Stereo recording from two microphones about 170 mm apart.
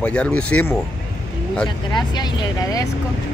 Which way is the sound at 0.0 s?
5° left (ahead or behind).